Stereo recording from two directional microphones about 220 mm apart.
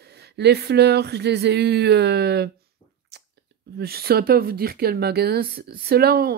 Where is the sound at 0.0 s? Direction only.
50° right (ahead or behind).